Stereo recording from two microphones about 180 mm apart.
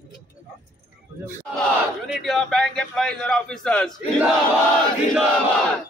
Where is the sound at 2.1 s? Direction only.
Centre (ahead or behind).